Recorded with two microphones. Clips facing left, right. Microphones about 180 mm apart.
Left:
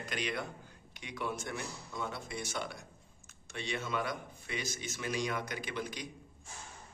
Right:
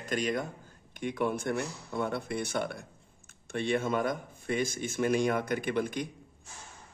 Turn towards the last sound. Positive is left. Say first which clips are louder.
# right 9 dB
turn(degrees=-55)  # may be behind; listen again after turning